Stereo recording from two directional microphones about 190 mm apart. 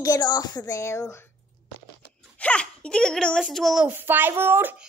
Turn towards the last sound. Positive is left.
turn(degrees=-10)  # may be behind; listen again after turning